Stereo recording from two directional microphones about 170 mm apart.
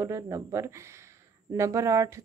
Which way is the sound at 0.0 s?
20° right (ahead or behind).